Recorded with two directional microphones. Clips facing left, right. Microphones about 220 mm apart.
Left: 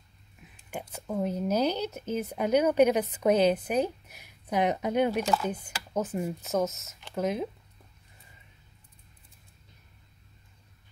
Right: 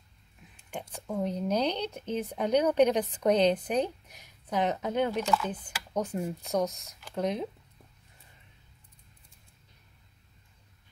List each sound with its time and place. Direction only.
0.7 s speech: 5° left (ahead or behind)
5.2 s speech: 35° left (ahead or behind)
5.5 s speech: 5° left (ahead or behind)